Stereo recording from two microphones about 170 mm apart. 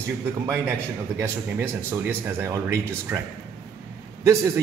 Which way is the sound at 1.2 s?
15° right (ahead or behind).